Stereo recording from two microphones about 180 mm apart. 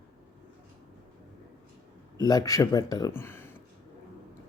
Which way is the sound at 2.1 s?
20° left (ahead or behind).